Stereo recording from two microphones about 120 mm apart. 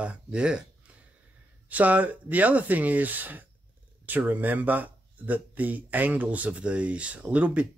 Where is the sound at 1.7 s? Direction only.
15° right (ahead or behind).